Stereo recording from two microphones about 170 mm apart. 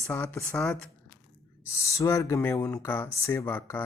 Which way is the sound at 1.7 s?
15° left (ahead or behind).